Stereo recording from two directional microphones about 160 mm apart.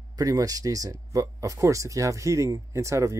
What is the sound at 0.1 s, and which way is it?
Speech, 20° right (ahead or behind).